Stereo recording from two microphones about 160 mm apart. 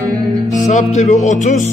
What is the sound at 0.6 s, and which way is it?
Music, 50° left (ahead or behind).